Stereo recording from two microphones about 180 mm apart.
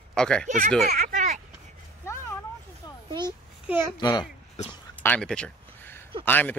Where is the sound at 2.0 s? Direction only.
15° left (ahead or behind).